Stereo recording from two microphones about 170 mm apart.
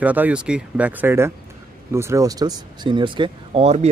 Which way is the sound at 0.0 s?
10° right (ahead or behind).